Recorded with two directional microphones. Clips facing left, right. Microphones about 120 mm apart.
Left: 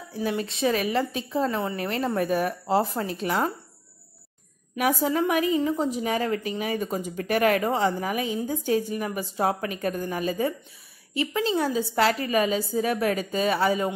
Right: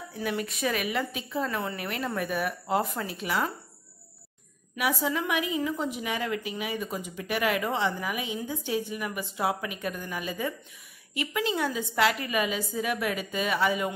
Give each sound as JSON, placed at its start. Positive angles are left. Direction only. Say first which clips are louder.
{"t": 0.1, "sound": "a woman's voice", "louder": "left 4 dB", "side_deg": 30}
{"t": 4.7, "sound": "a woman's voice", "louder": "left 5 dB", "side_deg": 45}